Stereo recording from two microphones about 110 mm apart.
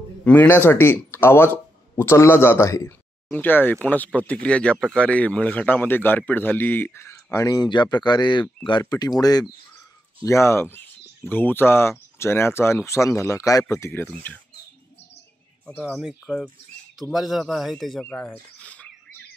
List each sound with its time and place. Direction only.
0.2 s speech: 15° left (ahead or behind); by 9.5 s 35° left (ahead or behind)
10.2 s speech: 25° left (ahead or behind)
15.8 s speech: 5° right (ahead or behind)
18.0 s speech: 15° left (ahead or behind)